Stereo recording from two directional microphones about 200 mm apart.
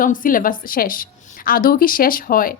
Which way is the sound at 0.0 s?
45° left (ahead or behind).